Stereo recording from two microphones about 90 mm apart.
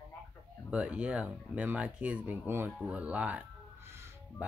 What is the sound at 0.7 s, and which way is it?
Speech, 15° right (ahead or behind).